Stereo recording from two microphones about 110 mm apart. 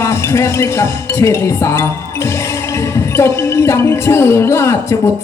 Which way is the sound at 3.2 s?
25° left (ahead or behind).